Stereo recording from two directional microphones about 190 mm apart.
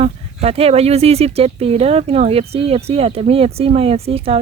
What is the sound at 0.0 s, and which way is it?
Speech, 30° right (ahead or behind).